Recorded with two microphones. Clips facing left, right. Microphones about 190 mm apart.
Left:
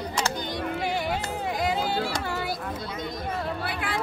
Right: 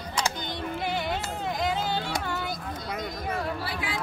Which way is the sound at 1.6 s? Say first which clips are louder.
Left 2 dB; 10° left (ahead or behind).